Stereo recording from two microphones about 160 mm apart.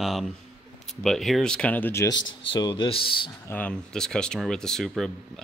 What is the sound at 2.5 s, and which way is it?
Speech, 30° left (ahead or behind).